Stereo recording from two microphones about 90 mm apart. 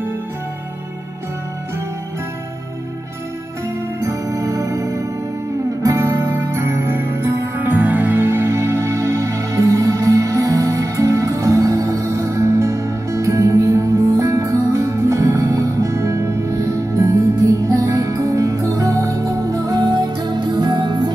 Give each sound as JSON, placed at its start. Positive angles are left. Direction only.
{"t": 4.0, "sound": "music", "side_deg": -35}
{"t": 7.5, "sound": "music", "side_deg": -20}
{"t": 19.8, "sound": "music", "side_deg": -55}